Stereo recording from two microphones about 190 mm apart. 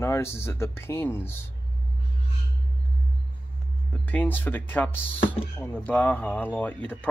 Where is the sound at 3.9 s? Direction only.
10° left (ahead or behind).